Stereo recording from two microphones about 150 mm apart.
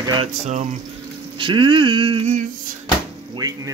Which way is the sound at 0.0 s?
30° right (ahead or behind).